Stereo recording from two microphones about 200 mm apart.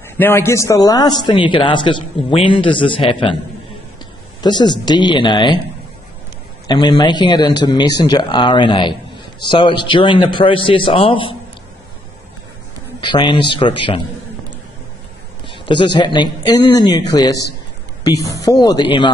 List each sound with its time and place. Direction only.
0.2 s a man's voice: 10° left (ahead or behind); by 3.3 s 25° left (ahead or behind)
4.4 s a man's voice: 20° left (ahead or behind)
6.7 s a man's voice: 20° left (ahead or behind)
13.0 s a man's voice: 25° left (ahead or behind)
15.4 s a man's voice: 25° left (ahead or behind)